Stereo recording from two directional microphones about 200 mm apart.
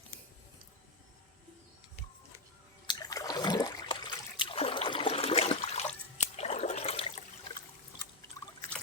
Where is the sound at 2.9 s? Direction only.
20° left (ahead or behind).